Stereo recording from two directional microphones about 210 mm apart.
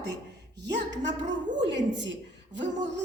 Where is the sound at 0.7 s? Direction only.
55° right (ahead or behind).